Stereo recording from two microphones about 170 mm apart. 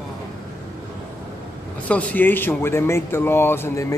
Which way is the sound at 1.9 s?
10° left (ahead or behind).